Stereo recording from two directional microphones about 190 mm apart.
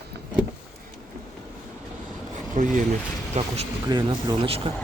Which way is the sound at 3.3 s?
40° right (ahead or behind).